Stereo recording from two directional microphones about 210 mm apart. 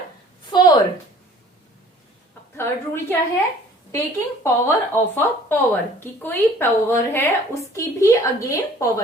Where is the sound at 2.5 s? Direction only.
10° left (ahead or behind).